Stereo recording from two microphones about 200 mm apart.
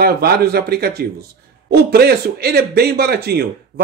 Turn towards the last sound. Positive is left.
turn(degrees=-55)  # may be behind; listen again after turning